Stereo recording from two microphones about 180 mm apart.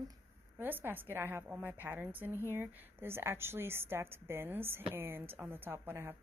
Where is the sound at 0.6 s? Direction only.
10° right (ahead or behind).